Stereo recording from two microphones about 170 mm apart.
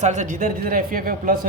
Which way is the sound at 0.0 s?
45° right (ahead or behind).